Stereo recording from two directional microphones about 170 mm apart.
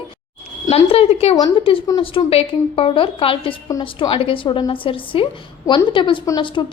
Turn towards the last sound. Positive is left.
turn(degrees=25)  # may be behind; listen again after turning